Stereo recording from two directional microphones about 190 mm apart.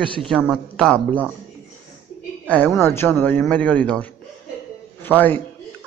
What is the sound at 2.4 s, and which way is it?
A man's voice, 10° left (ahead or behind).